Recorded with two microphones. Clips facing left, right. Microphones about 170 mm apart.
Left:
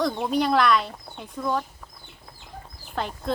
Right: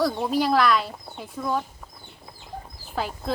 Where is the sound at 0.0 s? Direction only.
5° right (ahead or behind).